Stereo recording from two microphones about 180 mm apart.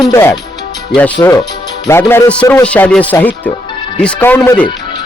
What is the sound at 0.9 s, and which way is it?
Speech, 10° left (ahead or behind).